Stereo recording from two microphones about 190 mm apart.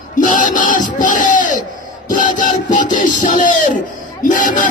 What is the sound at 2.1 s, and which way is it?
Music, 45° left (ahead or behind).